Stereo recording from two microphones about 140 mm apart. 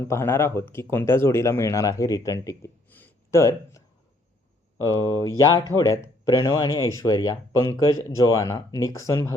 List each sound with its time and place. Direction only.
0.0 s speech: 20° left (ahead or behind)
4.9 s speech: 25° left (ahead or behind)